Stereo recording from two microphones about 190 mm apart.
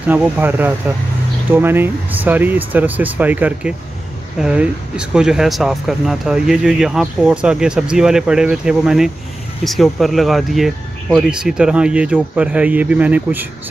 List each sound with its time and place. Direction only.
0.0 s speech: 10° right (ahead or behind)